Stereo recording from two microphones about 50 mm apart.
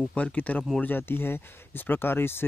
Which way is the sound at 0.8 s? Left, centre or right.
Left.